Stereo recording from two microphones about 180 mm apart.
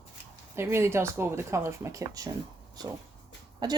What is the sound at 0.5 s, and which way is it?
Speech, 15° right (ahead or behind).